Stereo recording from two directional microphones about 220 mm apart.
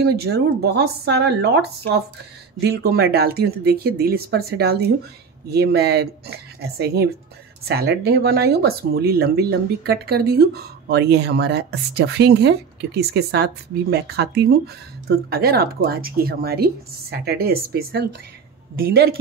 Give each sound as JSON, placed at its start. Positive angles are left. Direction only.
{"t": 0.0, "sound": "speech", "side_deg": -45}
{"t": 2.6, "sound": "speech", "side_deg": -45}